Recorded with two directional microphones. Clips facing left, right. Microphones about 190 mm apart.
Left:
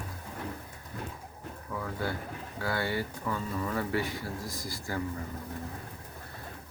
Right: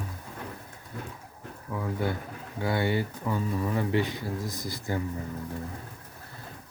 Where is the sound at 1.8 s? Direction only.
20° right (ahead or behind).